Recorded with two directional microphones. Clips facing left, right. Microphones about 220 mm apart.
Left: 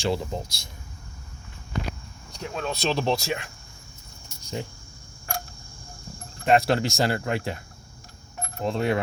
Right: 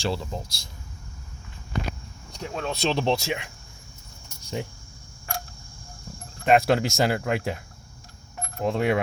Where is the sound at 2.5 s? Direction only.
25° right (ahead or behind).